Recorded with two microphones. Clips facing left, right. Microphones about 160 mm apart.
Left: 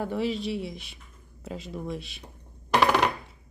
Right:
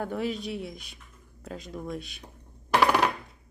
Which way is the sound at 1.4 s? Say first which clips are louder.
Left 2 dB; 5° left (ahead or behind).